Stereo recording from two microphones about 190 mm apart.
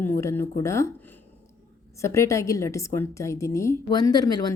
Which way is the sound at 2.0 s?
15° left (ahead or behind).